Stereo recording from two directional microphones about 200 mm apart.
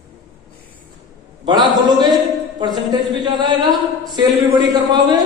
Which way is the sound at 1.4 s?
20° right (ahead or behind).